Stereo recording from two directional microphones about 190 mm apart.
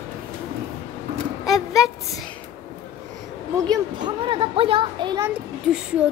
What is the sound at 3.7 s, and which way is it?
Speech, 25° right (ahead or behind).